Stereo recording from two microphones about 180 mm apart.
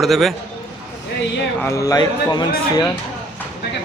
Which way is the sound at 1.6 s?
15° left (ahead or behind).